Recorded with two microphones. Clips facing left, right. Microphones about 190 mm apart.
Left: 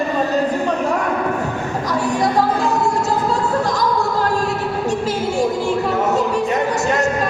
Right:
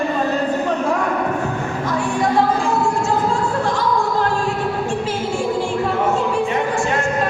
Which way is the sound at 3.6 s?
40° left (ahead or behind).